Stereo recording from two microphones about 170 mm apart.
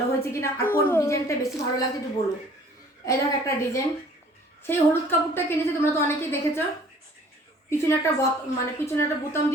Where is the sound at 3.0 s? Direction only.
15° left (ahead or behind).